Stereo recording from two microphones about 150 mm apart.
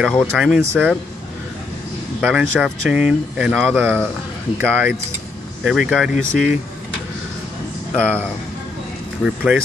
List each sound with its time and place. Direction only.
0.1 s speech: 5° left (ahead or behind)
2.2 s speech: 5° right (ahead or behind)
3.7 s speech: 15° right (ahead or behind)
5.6 s speech: 5° right (ahead or behind)
6.1 s speech: 60° left (ahead or behind)
7.9 s speech: 10° left (ahead or behind)
9.2 s speech: 5° right (ahead or behind)